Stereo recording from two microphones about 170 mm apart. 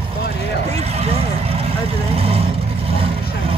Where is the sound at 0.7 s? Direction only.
35° right (ahead or behind).